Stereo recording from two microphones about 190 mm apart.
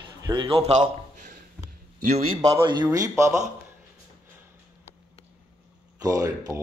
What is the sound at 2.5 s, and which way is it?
Speech, 25° right (ahead or behind).